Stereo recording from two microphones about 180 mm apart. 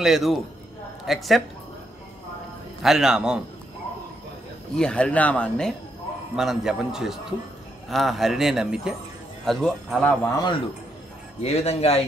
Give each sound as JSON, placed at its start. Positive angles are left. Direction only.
{"t": 0.0, "sound": "a man's voice", "side_deg": 0}
{"t": 2.8, "sound": "a man's voice", "side_deg": 0}
{"t": 4.7, "sound": "a man's voice", "side_deg": 5}
{"t": 10.2, "sound": "a man's voice", "side_deg": 20}
{"t": 11.4, "sound": "a man's voice", "side_deg": 35}